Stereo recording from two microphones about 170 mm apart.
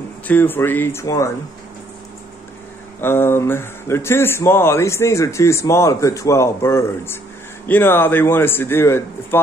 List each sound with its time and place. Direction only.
0.3 s speech: 10° left (ahead or behind)
3.0 s speech: 15° left (ahead or behind)